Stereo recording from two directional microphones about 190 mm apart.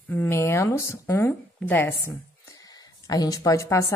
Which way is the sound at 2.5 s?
20° left (ahead or behind).